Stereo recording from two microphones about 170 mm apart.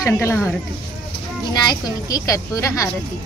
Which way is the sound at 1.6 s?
20° left (ahead or behind).